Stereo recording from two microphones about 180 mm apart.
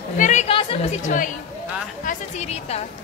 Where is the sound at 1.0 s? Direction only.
45° left (ahead or behind).